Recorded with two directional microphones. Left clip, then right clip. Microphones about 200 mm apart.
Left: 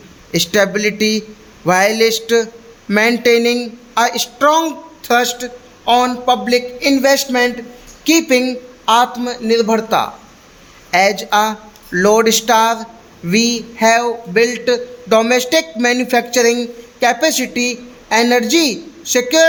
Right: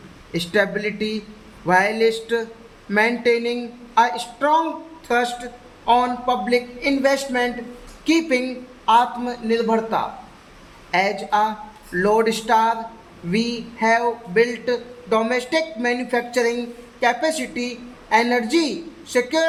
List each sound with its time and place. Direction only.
0.3 s a man's voice: 55° left (ahead or behind)